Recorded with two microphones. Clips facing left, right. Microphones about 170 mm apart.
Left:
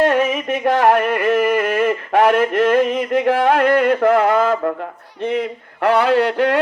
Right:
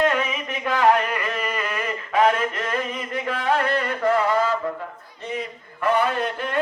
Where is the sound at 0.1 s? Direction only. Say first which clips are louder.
Left 8 dB; 55° left (ahead or behind).